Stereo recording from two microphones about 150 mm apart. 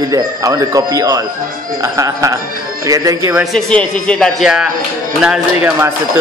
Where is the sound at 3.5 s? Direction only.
5° left (ahead or behind).